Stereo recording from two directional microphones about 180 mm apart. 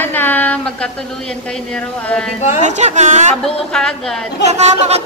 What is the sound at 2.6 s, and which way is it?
Speech, 40° right (ahead or behind).